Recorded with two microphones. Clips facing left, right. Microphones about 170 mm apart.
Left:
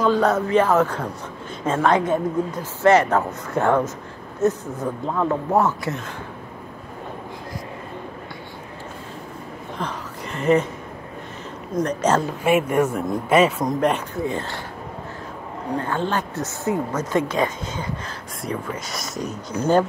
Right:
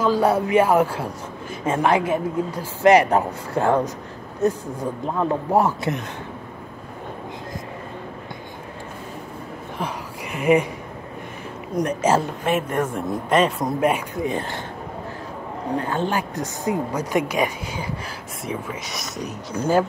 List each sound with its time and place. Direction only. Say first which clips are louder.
0.0 s speech: even; 5° right (ahead or behind)
3.5 s speech: even; 35° right (ahead or behind)
4.4 s speech: left 1 dB; 10° right (ahead or behind)
9.8 s a sound: right 1 dB; 10° right (ahead or behind)
11.7 s speech: even; 10° right (ahead or behind)
12.4 s speech: left 8 dB; 10° left (ahead or behind)
13.7 s speech: even; 10° right (ahead or behind)
15.8 s speech: left 1 dB; 15° right (ahead or behind)
18.4 s speech: left 1 dB; centre (ahead or behind)
19.6 s speech: left 1 dB; 10° right (ahead or behind)